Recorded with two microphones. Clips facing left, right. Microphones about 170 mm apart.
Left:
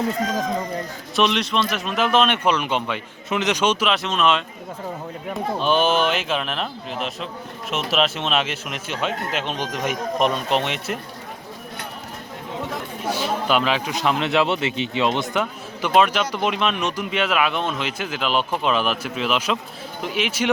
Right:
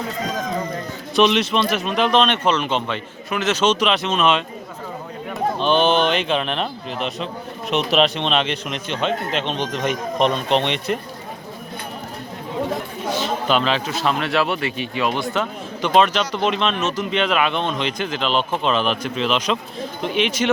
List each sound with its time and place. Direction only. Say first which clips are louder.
1.1 s a man's voice: right 4 dB; centre (ahead or behind)
5.5 s speech: right 2 dB; 5° left (ahead or behind)
13.1 s a man's voice: right 1 dB; 10° left (ahead or behind)